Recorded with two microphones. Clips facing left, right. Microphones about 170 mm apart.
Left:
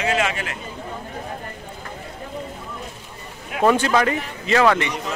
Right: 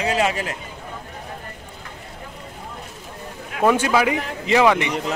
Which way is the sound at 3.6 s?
5° right (ahead or behind).